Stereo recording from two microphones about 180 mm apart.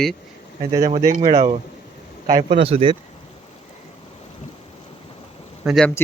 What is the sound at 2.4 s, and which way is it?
Speech, 30° right (ahead or behind).